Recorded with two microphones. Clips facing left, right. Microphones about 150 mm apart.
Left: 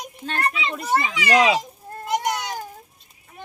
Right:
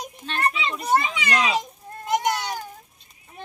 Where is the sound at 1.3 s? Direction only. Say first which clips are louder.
Left 6 dB; 90° left.